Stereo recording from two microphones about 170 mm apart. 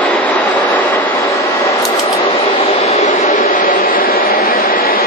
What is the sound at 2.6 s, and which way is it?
Vehicle, 40° left (ahead or behind).